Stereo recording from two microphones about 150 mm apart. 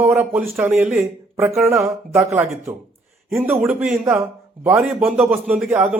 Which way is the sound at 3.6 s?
10° right (ahead or behind).